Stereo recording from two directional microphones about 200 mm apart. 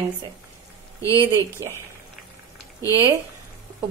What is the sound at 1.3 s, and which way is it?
Speech, 10° left (ahead or behind).